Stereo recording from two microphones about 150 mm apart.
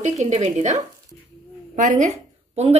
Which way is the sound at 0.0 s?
50° right (ahead or behind).